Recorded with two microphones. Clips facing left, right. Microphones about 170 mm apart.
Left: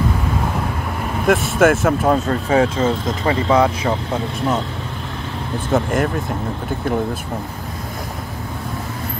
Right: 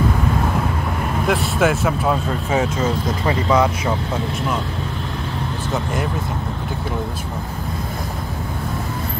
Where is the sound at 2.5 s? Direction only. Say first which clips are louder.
Left 4 dB; 30° left (ahead or behind).